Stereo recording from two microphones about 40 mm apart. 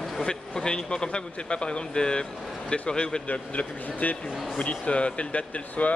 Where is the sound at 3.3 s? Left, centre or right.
Left.